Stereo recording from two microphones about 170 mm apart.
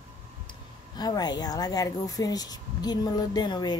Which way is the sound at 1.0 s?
25° left (ahead or behind).